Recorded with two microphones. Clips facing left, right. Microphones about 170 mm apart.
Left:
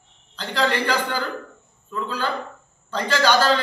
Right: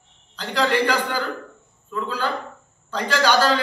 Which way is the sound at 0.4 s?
10° right (ahead or behind).